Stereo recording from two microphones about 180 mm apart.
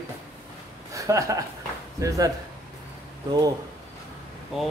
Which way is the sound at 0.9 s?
15° right (ahead or behind).